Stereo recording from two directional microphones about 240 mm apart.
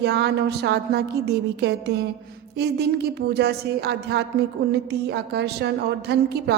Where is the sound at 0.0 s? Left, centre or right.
Right.